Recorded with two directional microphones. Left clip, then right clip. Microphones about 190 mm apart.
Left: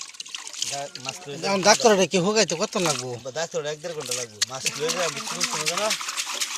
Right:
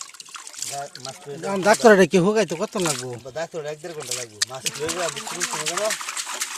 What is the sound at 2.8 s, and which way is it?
Speech, 20° right (ahead or behind).